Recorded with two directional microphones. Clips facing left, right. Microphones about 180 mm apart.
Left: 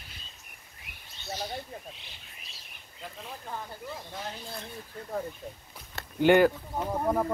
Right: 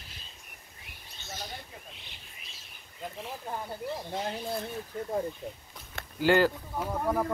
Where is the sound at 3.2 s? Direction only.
20° right (ahead or behind).